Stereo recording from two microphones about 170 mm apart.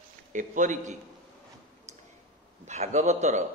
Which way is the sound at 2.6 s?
45° right (ahead or behind).